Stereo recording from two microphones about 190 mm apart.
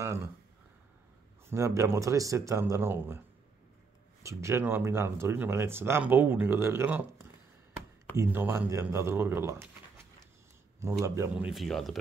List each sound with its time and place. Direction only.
0.0 s speech: 15° right (ahead or behind)
1.5 s speech: 15° right (ahead or behind)
4.2 s speech: 15° right (ahead or behind); by 12.0 s centre (ahead or behind)